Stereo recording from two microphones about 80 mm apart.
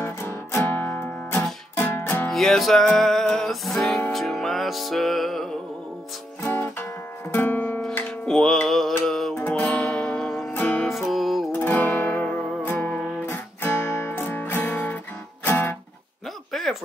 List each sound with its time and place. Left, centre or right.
0.0 s guitar: left
2.3 s music: centre
6.4 s music: left
8.3 s music: centre
10.5 s music: left
10.9 s music: centre
11.6 s music: left
15.4 s guitar: left
16.5 s a sound: centre